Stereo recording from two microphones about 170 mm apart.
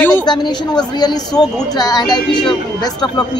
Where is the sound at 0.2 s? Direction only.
25° left (ahead or behind).